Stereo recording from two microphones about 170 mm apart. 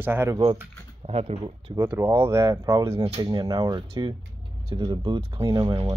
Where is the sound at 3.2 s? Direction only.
20° right (ahead or behind).